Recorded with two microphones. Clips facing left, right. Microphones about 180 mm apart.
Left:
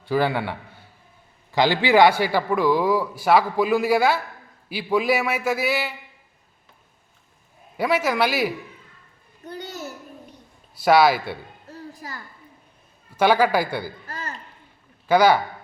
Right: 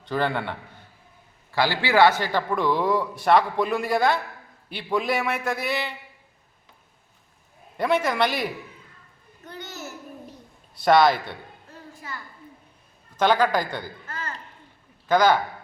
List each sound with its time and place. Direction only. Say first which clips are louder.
0.0 s a man's voice: left 3 dB; 5° left (ahead or behind)
1.5 s a man's voice: left 3 dB; 20° left (ahead or behind)
7.8 s a man's voice: left 1 dB; 5° left (ahead or behind)
10.8 s a man's voice: left 1 dB; 5° left (ahead or behind)
11.7 s a sound: left 3 dB; 40° left (ahead or behind)
13.1 s a man's voice: left 2 dB; 10° left (ahead or behind)
15.0 s a man's voice: left 2 dB; 10° left (ahead or behind)